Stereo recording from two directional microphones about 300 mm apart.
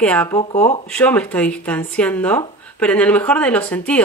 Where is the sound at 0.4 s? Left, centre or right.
Centre.